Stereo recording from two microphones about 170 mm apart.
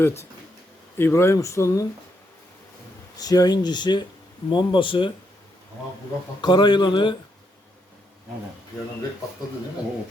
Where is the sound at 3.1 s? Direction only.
20° left (ahead or behind).